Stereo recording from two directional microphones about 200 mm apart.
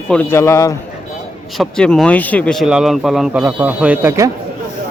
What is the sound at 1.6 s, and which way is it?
Speech, centre (ahead or behind).